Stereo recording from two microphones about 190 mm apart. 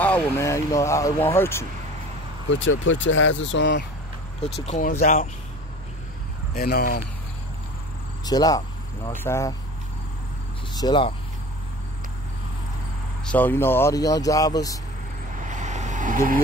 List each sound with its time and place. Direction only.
0.0 s speech: 10° left (ahead or behind)
2.5 s speech: 80° left
4.6 s speech: 40° left (ahead or behind)
6.5 s speech: 50° left (ahead or behind)
8.3 s speech: 20° left (ahead or behind)
10.7 s speech: 20° left (ahead or behind)
13.2 s speech: 10° left (ahead or behind)
15.4 s vehicle: 40° right (ahead or behind)